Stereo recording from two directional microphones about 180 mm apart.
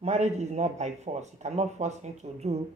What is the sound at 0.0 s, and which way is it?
Speech, 40° right (ahead or behind).